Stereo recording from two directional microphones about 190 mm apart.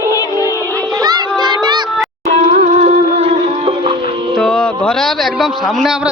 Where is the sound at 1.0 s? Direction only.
20° right (ahead or behind).